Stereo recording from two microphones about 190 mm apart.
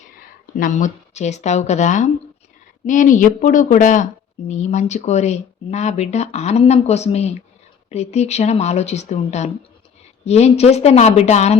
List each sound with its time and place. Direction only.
0.2 s a woman's voice: 45° left (ahead or behind)